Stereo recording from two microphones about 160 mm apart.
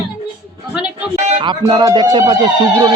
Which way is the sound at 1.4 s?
30° right (ahead or behind).